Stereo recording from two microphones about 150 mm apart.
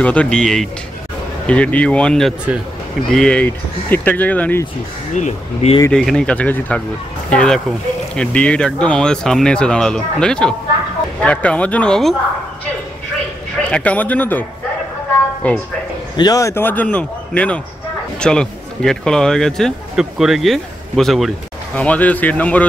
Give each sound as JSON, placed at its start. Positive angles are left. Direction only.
{"t": 0.0, "sound": "speech", "side_deg": 10}
{"t": 5.1, "sound": "speech", "side_deg": 50}
{"t": 5.9, "sound": "speech", "side_deg": 5}
{"t": 13.7, "sound": "speech", "side_deg": 10}
{"t": 15.4, "sound": "speech", "side_deg": 10}
{"t": 16.2, "sound": "speech", "side_deg": 25}